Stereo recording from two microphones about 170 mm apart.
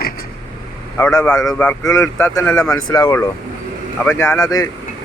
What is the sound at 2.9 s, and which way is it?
Speech, 25° left (ahead or behind).